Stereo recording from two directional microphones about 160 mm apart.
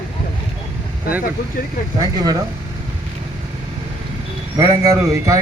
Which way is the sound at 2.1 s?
25° right (ahead or behind).